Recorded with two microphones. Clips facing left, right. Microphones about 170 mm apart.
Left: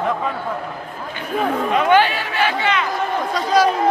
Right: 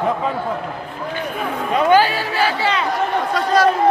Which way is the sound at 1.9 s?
40° right (ahead or behind).